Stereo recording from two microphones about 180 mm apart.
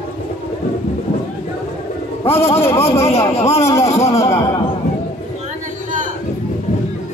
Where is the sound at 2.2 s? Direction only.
15° left (ahead or behind).